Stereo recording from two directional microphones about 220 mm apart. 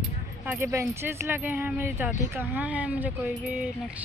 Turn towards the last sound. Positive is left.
turn(degrees=-5)  # may be behind; listen again after turning